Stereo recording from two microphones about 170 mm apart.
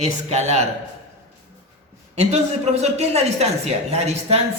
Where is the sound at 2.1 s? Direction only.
40° right (ahead or behind).